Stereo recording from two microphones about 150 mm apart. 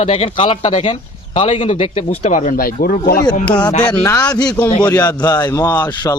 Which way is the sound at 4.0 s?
20° left (ahead or behind).